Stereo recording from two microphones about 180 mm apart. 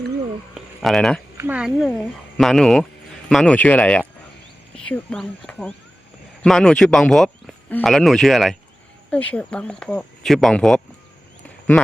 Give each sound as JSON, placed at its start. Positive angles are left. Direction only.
{"t": 0.5, "sound": "speech", "side_deg": 0}
{"t": 1.4, "sound": "speech", "side_deg": -10}